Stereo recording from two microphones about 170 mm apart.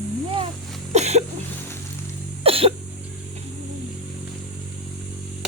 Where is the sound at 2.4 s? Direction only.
35° right (ahead or behind).